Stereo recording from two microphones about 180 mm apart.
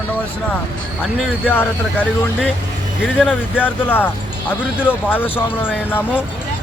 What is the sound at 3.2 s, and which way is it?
Speech, 5° right (ahead or behind).